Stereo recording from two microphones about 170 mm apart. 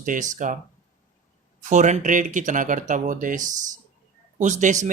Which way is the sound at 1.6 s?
45° right (ahead or behind).